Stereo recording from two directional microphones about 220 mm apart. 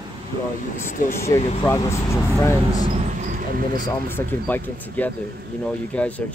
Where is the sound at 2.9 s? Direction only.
35° right (ahead or behind).